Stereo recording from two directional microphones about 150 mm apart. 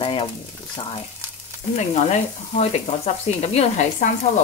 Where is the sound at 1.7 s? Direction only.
50° left (ahead or behind).